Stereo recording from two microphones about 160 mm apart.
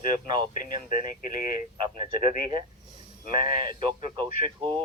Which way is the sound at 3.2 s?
30° right (ahead or behind).